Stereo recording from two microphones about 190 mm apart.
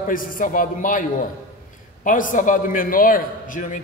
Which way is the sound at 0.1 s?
45° left (ahead or behind).